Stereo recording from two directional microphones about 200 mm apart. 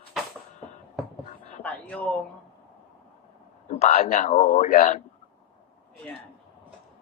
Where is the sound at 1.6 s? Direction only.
5° left (ahead or behind).